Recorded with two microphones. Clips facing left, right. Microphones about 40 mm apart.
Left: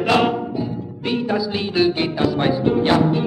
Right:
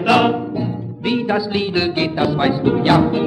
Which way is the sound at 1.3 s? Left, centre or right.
Right.